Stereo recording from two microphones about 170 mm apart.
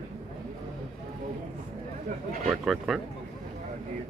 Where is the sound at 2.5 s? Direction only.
Centre (ahead or behind).